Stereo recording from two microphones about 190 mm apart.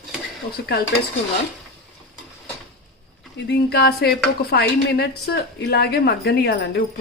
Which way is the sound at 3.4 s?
60° left (ahead or behind).